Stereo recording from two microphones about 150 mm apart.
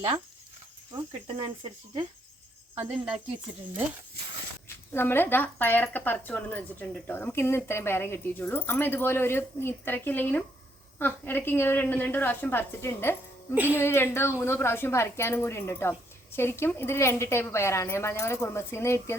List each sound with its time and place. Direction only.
0.9 s speech: 35° right (ahead or behind)
2.7 s speech: 10° right (ahead or behind)
4.9 s speech: 15° left (ahead or behind)
13.5 s speech: 10° right (ahead or behind)
13.7 s speech: 15° left (ahead or behind)